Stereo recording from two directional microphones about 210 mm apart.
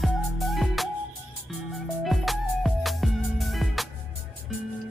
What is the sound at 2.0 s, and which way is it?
Music, centre (ahead or behind).